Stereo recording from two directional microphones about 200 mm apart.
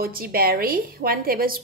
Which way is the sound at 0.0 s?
50° right (ahead or behind).